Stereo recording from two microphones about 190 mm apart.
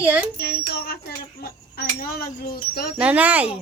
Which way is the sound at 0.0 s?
10° right (ahead or behind).